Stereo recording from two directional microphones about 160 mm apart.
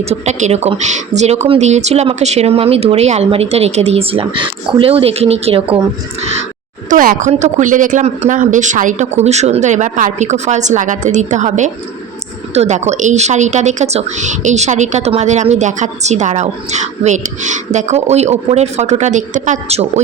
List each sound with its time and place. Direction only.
0.0 s speech: 45° right (ahead or behind)
6.9 s speech: 55° right (ahead or behind); by 19.9 s 40° right (ahead or behind)